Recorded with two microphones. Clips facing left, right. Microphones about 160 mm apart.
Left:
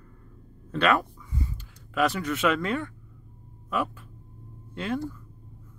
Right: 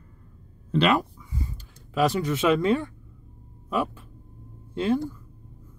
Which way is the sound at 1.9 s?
30° right (ahead or behind).